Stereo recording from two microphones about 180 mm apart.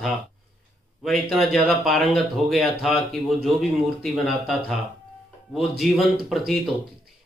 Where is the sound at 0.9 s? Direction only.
Centre (ahead or behind).